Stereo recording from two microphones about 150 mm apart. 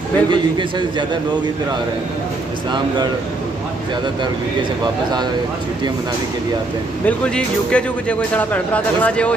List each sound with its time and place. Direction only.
0.3 s a man's voice: 30° right (ahead or behind)
7.1 s speech: 5° left (ahead or behind)